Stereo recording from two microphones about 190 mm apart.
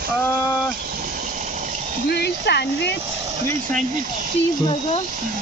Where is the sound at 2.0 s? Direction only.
60° left (ahead or behind).